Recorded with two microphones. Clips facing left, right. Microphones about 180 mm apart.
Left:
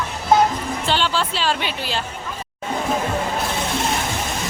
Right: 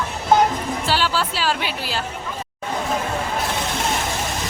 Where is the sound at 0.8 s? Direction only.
5° right (ahead or behind).